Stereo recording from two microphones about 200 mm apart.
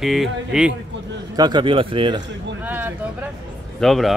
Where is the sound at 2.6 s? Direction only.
10° right (ahead or behind).